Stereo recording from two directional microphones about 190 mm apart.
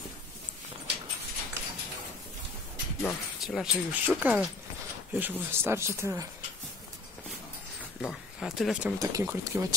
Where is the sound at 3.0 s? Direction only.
Centre (ahead or behind).